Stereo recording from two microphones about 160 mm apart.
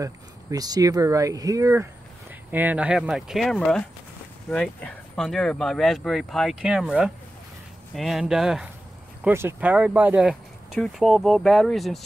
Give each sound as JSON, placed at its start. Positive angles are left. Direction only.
{"t": 0.0, "sound": "speech", "side_deg": -20}
{"t": 9.2, "sound": "speech", "side_deg": -15}